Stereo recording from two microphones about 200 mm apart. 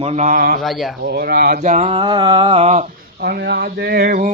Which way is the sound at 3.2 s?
60° right (ahead or behind).